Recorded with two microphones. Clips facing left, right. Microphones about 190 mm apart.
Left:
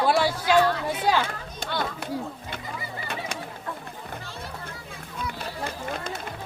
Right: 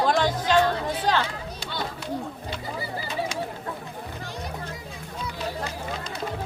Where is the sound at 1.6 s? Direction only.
55° left (ahead or behind).